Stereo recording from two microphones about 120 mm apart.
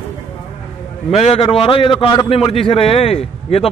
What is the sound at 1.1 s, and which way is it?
A man's voice, 55° left (ahead or behind).